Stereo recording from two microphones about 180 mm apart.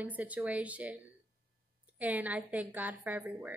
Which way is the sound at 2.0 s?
10° right (ahead or behind).